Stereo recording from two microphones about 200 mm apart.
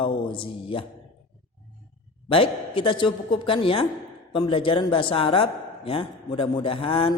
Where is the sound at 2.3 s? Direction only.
25° left (ahead or behind).